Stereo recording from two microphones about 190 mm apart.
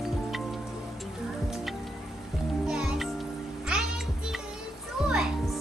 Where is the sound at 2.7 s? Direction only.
5° right (ahead or behind).